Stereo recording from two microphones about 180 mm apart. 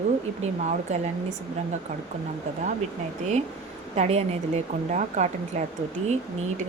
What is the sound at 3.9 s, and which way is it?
Speech, 35° right (ahead or behind).